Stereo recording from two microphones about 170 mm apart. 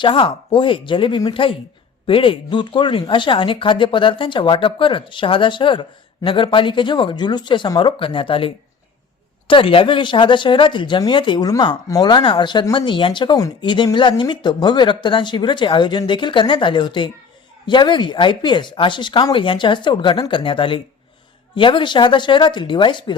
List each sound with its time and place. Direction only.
0.0 s speech: 30° left (ahead or behind)